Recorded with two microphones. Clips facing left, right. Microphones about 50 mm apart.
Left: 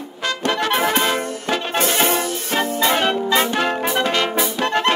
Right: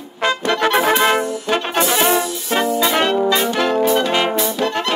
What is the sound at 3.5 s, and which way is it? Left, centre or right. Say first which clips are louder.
Brass instrument: right 4 dB; centre.